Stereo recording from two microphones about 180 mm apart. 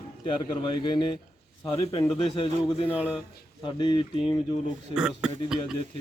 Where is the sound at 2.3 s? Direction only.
30° left (ahead or behind).